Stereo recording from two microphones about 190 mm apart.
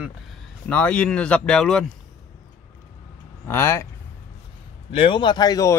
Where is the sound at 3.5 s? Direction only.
15° left (ahead or behind).